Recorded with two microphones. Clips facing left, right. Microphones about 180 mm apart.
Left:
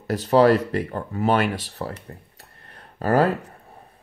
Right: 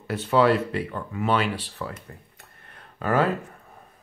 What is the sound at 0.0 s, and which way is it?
Speech, 40° left (ahead or behind).